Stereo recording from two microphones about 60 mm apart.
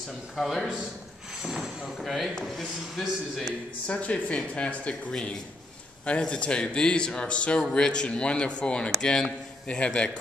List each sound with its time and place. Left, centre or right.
0.4 s speech: centre
1.4 s a sound: centre
2.0 s speech: centre
3.8 s speech: left